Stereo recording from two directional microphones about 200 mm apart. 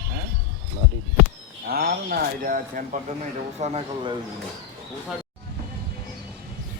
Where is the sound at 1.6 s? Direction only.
50° right (ahead or behind).